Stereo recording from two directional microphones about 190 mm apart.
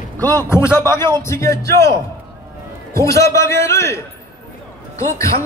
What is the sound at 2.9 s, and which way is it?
A man's voice, 15° left (ahead or behind).